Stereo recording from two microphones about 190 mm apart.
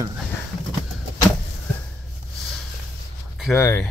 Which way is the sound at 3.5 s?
15° left (ahead or behind).